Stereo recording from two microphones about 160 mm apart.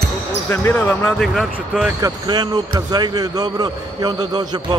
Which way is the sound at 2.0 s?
25° right (ahead or behind).